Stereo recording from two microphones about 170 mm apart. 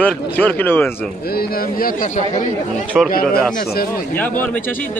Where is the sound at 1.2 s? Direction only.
65° left (ahead or behind).